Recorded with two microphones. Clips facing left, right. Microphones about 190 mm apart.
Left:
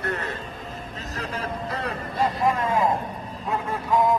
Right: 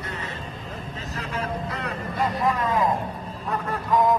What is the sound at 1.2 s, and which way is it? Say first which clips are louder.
Vehicle: right 1 dB; 35° left (ahead or behind).